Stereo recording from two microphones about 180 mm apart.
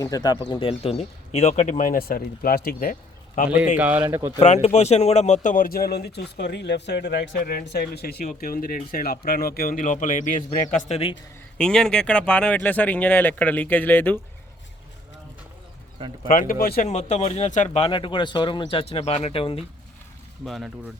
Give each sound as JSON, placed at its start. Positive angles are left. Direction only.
{"t": 0.0, "sound": "speech", "side_deg": 20}
{"t": 3.8, "sound": "speech", "side_deg": -10}
{"t": 4.4, "sound": "speech", "side_deg": 40}
{"t": 11.5, "sound": "speech", "side_deg": 5}
{"t": 16.3, "sound": "speech", "side_deg": 50}
{"t": 16.9, "sound": "speech", "side_deg": 40}
{"t": 17.8, "sound": "speech", "side_deg": 25}
{"t": 20.4, "sound": "speech", "side_deg": 0}